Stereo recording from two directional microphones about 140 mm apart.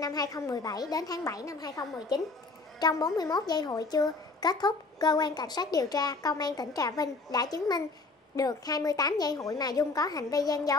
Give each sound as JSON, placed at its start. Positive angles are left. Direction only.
{"t": 0.0, "sound": "a woman's voice", "side_deg": 25}